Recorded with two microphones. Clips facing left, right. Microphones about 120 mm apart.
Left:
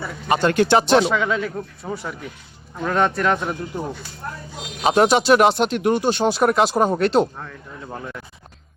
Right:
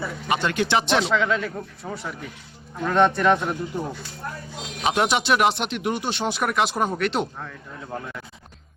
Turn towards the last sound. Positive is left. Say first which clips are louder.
# even
turn(degrees=5)  # may be behind; listen again after turning